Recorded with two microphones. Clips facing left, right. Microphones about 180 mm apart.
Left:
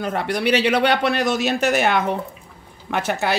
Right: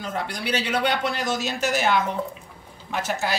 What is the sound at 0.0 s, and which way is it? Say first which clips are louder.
A woman's voice: left 8 dB; 65° left (ahead or behind).